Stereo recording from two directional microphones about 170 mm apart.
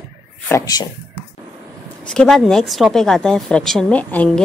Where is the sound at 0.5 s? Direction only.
20° left (ahead or behind).